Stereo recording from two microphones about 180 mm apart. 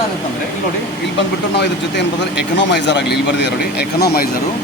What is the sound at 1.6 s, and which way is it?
Speech, 70° left (ahead or behind).